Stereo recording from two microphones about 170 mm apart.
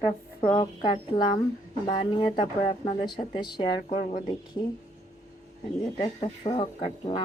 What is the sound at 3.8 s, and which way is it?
Speech, 40° left (ahead or behind).